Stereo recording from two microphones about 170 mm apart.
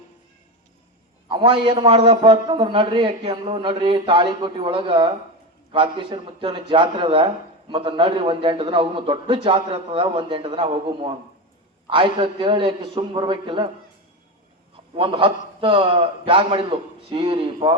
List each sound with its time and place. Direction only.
1.3 s a man's voice: 30° right (ahead or behind)
14.9 s a man's voice: 30° right (ahead or behind)